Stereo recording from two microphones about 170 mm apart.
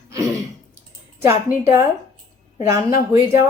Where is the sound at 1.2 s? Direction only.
15° right (ahead or behind).